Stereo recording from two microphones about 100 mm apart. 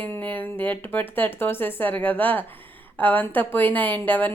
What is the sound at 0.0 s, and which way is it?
A woman's voice, 15° left (ahead or behind).